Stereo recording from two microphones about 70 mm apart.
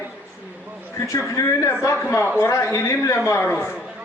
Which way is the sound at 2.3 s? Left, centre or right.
Left.